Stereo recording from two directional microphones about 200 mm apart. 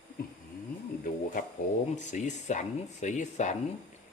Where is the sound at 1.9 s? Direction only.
35° left (ahead or behind).